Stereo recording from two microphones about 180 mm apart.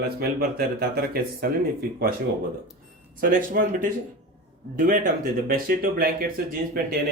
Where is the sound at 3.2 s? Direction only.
50° right (ahead or behind).